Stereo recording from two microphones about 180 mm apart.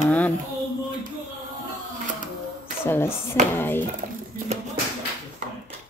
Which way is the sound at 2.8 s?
15° left (ahead or behind).